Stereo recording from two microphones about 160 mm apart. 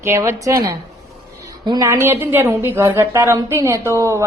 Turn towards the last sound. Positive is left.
turn(degrees=-20)  # may be behind; listen again after turning